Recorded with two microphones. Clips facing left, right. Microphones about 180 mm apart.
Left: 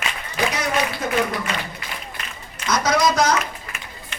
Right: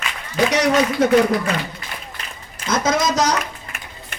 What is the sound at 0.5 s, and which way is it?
Speech, 85° right.